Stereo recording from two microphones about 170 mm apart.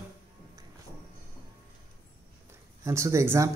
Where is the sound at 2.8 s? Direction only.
15° right (ahead or behind).